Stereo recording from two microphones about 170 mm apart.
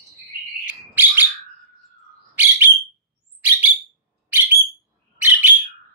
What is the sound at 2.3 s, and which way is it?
Bird, 10° right (ahead or behind).